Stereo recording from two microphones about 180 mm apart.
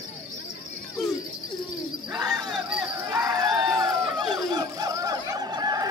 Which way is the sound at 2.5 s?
5° right (ahead or behind).